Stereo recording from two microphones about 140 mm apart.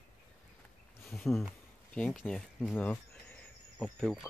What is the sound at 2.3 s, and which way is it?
Speech, 5° left (ahead or behind).